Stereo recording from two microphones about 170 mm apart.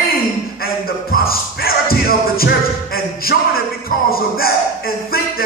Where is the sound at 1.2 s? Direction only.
60° left (ahead or behind).